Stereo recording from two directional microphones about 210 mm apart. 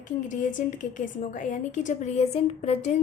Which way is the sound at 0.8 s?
40° left (ahead or behind).